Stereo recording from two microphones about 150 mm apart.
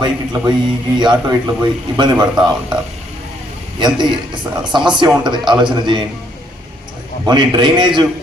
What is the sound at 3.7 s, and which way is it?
A man's voice, 30° right (ahead or behind).